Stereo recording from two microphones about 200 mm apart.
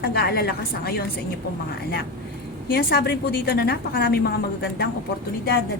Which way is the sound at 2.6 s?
55° left (ahead or behind).